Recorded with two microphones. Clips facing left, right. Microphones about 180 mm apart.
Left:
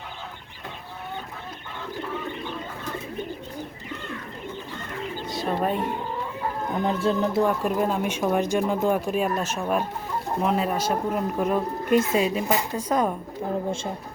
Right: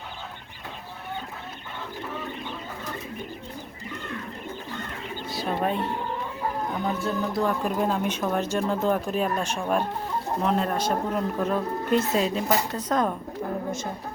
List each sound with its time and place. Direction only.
5.3 s speech: centre (ahead or behind)
6.8 s speech: 25° left (ahead or behind)
7.3 s speech: 5° left (ahead or behind)